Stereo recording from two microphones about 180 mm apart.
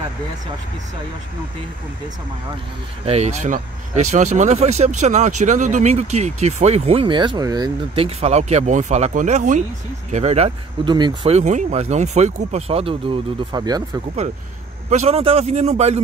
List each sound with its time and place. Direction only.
3.1 s speech: 35° right (ahead or behind)
11.3 s speech: 40° right (ahead or behind); by 13.8 s 20° right (ahead or behind)
14.9 s speech: 35° right (ahead or behind)